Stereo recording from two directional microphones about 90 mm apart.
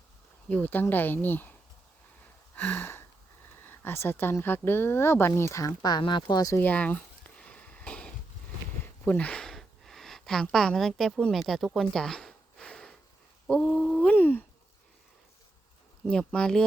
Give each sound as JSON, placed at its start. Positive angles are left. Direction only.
{"t": 0.4, "sound": "speech", "side_deg": 20}
{"t": 2.6, "sound": "a sound", "side_deg": 20}
{"t": 3.5, "sound": "speech", "side_deg": 25}
{"t": 6.0, "sound": "speech", "side_deg": 60}
{"t": 6.6, "sound": "a sound", "side_deg": 15}
{"t": 13.5, "sound": "speech", "side_deg": 10}
{"t": 14.0, "sound": "speech", "side_deg": 20}
{"t": 16.0, "sound": "speech", "side_deg": 10}